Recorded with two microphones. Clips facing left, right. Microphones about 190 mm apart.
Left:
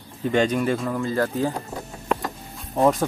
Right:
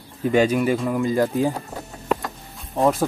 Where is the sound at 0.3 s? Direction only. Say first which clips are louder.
Right 3 dB; 10° right (ahead or behind).